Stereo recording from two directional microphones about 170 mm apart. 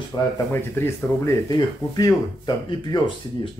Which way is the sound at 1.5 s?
25° left (ahead or behind).